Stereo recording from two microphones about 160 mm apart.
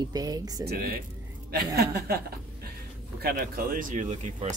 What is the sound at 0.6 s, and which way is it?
Speech, 75° right (ahead or behind).